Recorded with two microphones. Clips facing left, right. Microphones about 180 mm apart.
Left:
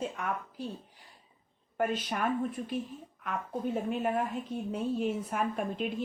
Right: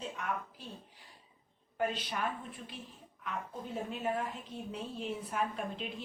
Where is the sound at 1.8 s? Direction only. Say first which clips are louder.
Left 4 dB; 45° left (ahead or behind).